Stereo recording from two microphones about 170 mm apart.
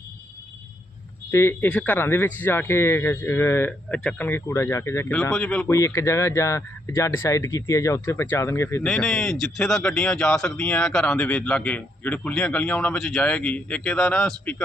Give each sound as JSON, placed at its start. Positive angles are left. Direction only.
{"t": 1.3, "sound": "speech", "side_deg": 15}
{"t": 5.7, "sound": "speech", "side_deg": 15}